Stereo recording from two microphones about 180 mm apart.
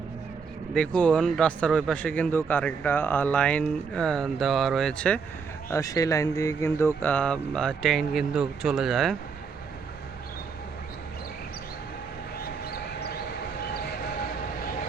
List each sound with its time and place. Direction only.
0.7 s speech: 5° left (ahead or behind)
5.7 s speech: 20° left (ahead or behind); by 9.1 s centre (ahead or behind)
12.4 s a sound: 60° left (ahead or behind)